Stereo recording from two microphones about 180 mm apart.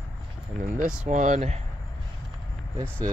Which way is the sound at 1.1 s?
40° right (ahead or behind).